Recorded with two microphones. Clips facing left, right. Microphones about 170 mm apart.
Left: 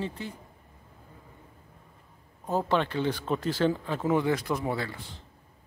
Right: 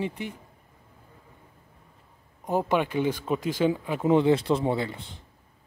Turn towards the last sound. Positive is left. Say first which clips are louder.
# right 4 dB
turn(degrees=-20)  # may be behind; listen again after turning